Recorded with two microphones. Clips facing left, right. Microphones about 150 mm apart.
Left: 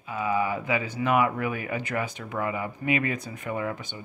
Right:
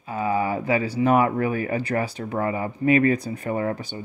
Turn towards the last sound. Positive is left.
turn(degrees=-35)  # may be behind; listen again after turning